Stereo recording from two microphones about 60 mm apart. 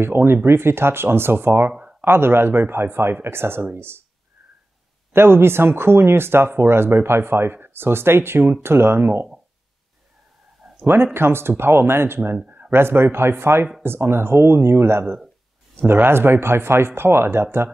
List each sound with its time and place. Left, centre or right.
0.0 s speech: right
5.1 s speech: right
10.6 s a sound: centre
11.1 s speech: right
12.4 s a sound: right
12.7 s speech: right